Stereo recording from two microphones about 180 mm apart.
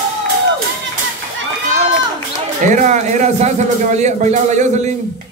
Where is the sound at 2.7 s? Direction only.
45° right (ahead or behind).